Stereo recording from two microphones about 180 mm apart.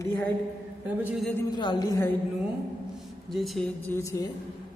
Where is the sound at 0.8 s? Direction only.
10° right (ahead or behind).